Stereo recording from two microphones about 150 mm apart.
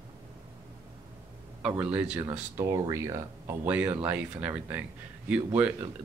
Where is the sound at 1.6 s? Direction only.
10° right (ahead or behind).